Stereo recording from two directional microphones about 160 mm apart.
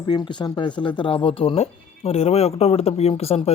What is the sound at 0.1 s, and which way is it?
Speech, 30° left (ahead or behind).